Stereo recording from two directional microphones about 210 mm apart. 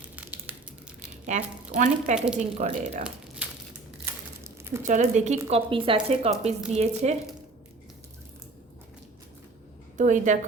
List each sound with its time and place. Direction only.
0.2 s crushing: 10° right (ahead or behind)
1.3 s a woman's voice: 35° right (ahead or behind)
2.1 s a woman's voice: 5° right (ahead or behind)
2.6 s a woman's voice: 35° right (ahead or behind)
4.8 s a woman's voice: 35° right (ahead or behind)
10.0 s a woman's voice: 35° right (ahead or behind)